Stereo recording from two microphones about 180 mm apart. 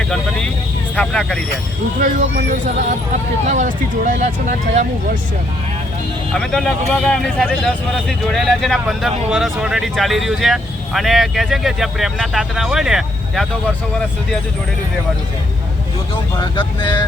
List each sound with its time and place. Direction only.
0.1 s vehicle: 5° left (ahead or behind)
0.9 s speech: 5° left (ahead or behind)
2.0 s speech: 45° right (ahead or behind)
6.3 s speech: centre (ahead or behind)
16.4 s speech: 25° left (ahead or behind)